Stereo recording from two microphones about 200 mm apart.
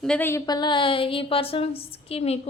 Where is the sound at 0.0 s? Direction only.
5° left (ahead or behind).